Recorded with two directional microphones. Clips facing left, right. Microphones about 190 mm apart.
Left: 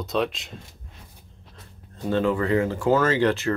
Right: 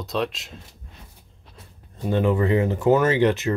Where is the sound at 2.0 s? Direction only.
15° right (ahead or behind).